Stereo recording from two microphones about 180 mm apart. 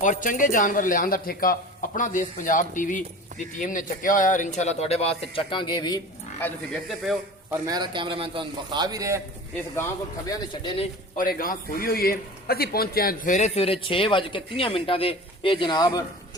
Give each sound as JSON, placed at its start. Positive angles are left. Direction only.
{"t": 0.0, "sound": "speech", "side_deg": 45}
{"t": 7.7, "sound": "a man's voice", "side_deg": -25}
{"t": 10.2, "sound": "speech", "side_deg": 25}
{"t": 11.2, "sound": "a man's voice", "side_deg": 50}